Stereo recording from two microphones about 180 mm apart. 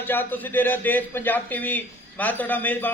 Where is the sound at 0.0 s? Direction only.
10° left (ahead or behind).